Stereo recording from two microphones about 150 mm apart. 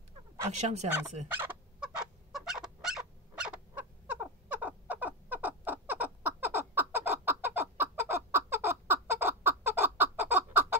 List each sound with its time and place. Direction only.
0.6 s speech: 50° right (ahead or behind)
1.4 s fowl: 10° right (ahead or behind)